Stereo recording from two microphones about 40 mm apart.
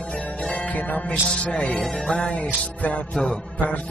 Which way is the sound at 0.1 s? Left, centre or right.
Left.